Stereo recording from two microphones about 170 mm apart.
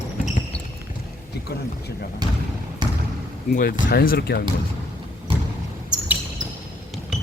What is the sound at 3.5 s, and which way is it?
Speech, 65° left (ahead or behind).